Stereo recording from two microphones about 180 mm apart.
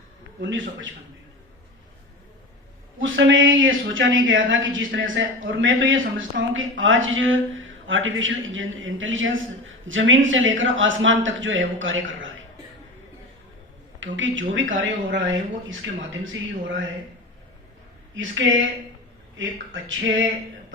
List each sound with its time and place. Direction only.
0.5 s speech: 90° right
3.0 s speech: 90° right
14.0 s speech: 90° right
18.1 s speech: 90° right